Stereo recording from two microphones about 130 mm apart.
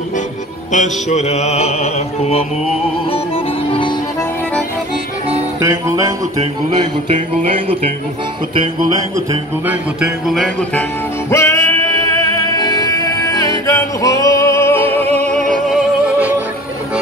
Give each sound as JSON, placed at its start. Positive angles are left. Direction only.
{"t": 0.7, "sound": "music", "side_deg": 65}
{"t": 5.6, "sound": "music", "side_deg": -20}
{"t": 9.7, "sound": "speech", "side_deg": -5}
{"t": 11.2, "sound": "music", "side_deg": 20}
{"t": 13.7, "sound": "singing", "side_deg": 25}
{"t": 15.1, "sound": "music", "side_deg": 5}